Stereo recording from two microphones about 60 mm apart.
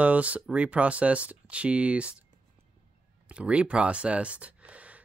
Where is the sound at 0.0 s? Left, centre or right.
Right.